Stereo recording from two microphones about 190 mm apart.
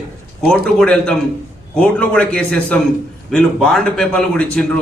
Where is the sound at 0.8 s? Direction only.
5° left (ahead or behind).